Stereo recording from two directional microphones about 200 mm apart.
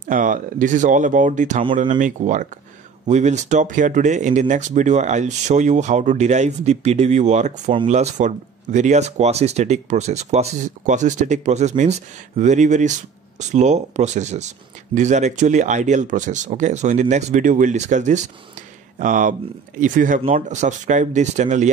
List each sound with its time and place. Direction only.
0.0 s speech: 40° right (ahead or behind)